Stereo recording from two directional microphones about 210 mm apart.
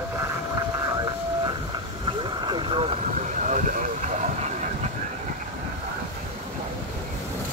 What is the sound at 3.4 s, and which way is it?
Vehicle, 35° right (ahead or behind).